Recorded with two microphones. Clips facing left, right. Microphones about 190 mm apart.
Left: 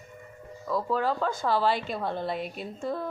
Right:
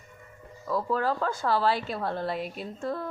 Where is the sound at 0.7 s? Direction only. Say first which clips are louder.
Even; centre (ahead or behind).